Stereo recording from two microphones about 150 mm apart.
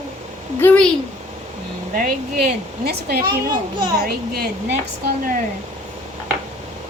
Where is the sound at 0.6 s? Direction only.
10° left (ahead or behind).